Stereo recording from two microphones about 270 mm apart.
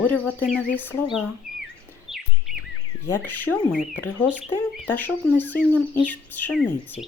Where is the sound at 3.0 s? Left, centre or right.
Centre.